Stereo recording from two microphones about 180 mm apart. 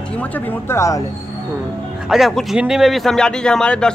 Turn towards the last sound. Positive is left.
turn(degrees=5)  # may be behind; listen again after turning